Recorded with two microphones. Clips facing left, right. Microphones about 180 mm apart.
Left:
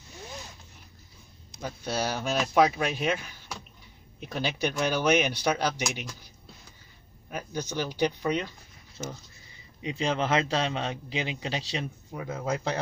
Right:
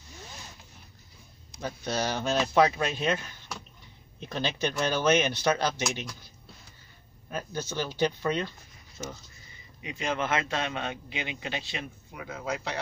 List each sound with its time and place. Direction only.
1.6 s speech: 10° left (ahead or behind)
9.0 s speech: 5° left (ahead or behind)
9.8 s a man's voice: 30° left (ahead or behind)